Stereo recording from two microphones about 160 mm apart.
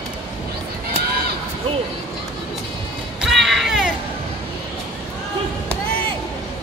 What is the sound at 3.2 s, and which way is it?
Music, centre (ahead or behind).